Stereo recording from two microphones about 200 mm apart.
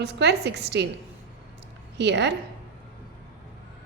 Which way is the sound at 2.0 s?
60° right (ahead or behind).